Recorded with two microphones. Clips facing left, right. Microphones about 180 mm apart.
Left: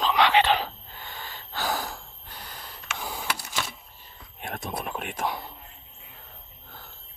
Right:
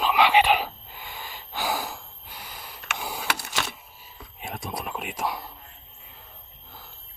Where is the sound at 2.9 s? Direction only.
10° right (ahead or behind).